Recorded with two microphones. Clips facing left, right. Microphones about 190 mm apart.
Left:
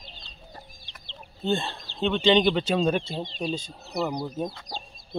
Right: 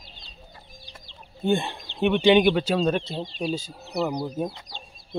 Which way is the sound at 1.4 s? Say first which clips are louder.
Right 3 dB; 15° right (ahead or behind).